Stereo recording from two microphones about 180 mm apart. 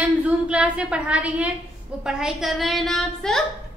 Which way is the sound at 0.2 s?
5° right (ahead or behind).